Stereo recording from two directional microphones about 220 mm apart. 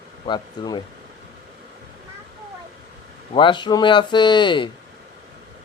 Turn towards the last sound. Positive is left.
turn(degrees=20)  # may be behind; listen again after turning